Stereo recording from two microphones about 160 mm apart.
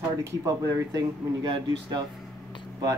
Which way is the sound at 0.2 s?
20° right (ahead or behind).